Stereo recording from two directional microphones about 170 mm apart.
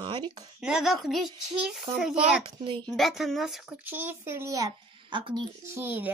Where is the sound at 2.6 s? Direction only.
30° right (ahead or behind).